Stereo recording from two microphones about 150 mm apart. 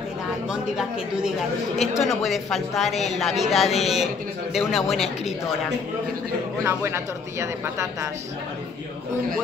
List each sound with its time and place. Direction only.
0.5 s a woman's voice: 5° right (ahead or behind)
6.6 s speech: 15° right (ahead or behind)